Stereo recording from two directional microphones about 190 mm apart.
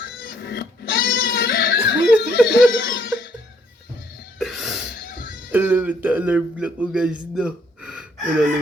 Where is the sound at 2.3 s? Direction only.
65° left (ahead or behind).